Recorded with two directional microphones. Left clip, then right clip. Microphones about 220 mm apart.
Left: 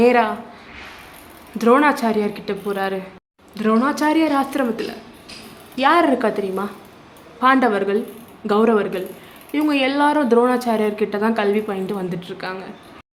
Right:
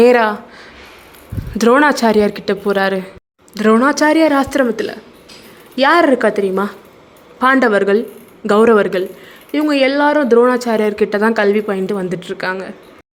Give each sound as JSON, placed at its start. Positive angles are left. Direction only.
{"t": 0.0, "sound": "speech", "side_deg": -30}
{"t": 1.5, "sound": "a woman's voice", "side_deg": -30}